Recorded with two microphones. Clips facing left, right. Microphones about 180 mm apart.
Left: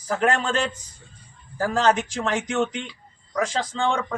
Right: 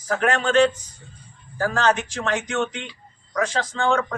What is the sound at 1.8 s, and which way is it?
Speech, 35° left (ahead or behind).